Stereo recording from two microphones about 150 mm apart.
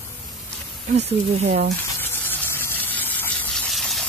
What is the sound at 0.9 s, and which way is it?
Speech, 45° right (ahead or behind).